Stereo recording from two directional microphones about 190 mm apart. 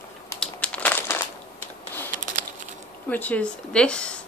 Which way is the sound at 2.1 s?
45° right (ahead or behind).